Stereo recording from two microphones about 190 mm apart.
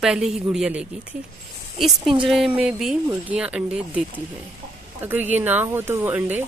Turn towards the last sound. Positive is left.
turn(degrees=-10)  # may be behind; listen again after turning